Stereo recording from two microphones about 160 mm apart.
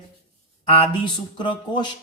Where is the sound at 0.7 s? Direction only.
30° left (ahead or behind).